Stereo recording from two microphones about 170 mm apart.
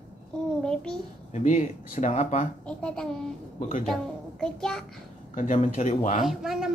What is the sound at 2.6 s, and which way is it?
Speech, 5° left (ahead or behind).